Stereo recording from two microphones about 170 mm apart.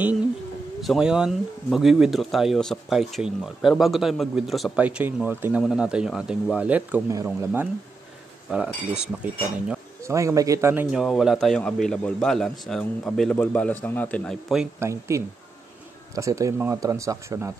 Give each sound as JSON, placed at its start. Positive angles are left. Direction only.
{"t": 0.7, "sound": "speech", "side_deg": 0}
{"t": 8.5, "sound": "speech", "side_deg": -5}
{"t": 10.0, "sound": "speech", "side_deg": -15}
{"t": 11.0, "sound": "speech", "side_deg": 0}
{"t": 14.8, "sound": "speech", "side_deg": -15}